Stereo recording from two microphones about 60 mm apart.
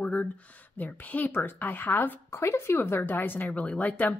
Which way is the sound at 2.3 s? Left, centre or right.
Left.